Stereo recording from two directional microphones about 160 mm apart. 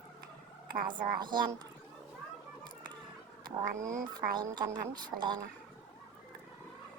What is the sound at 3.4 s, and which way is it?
Speech, 20° right (ahead or behind).